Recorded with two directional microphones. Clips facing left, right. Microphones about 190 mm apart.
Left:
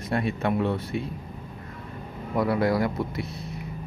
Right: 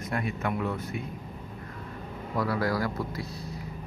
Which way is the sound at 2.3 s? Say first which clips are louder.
Left 5 dB; 25° left (ahead or behind).